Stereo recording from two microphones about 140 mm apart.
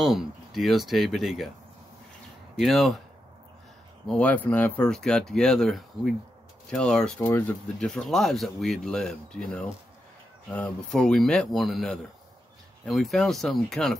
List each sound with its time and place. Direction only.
0.0 s speech: centre (ahead or behind)
2.5 s speech: centre (ahead or behind)
4.1 s speech: 10° left (ahead or behind)
7.8 s speech: 5° left (ahead or behind)
10.5 s speech: 5° left (ahead or behind)